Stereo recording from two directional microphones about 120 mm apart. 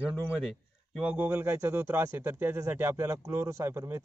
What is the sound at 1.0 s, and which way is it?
Speech, 10° right (ahead or behind).